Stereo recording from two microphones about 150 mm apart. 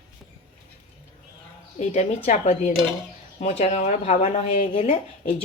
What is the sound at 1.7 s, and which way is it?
A woman's voice, 50° left (ahead or behind).